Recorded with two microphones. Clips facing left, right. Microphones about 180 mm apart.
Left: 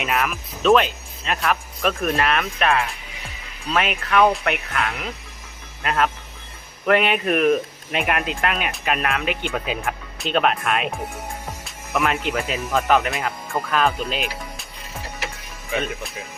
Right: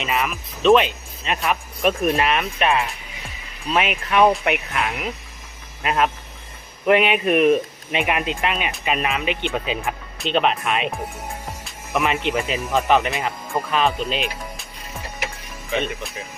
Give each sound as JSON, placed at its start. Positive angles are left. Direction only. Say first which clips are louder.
{"t": 0.0, "sound": "speech", "louder": "even", "side_deg": 0}
{"t": 4.7, "sound": "speech", "louder": "right 1 dB", "side_deg": -15}
{"t": 15.7, "sound": "speech", "louder": "right 1 dB", "side_deg": 5}